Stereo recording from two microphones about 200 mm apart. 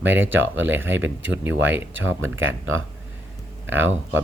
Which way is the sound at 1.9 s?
75° right (ahead or behind).